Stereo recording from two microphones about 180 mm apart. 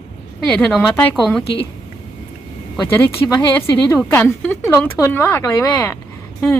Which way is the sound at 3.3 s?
15° left (ahead or behind).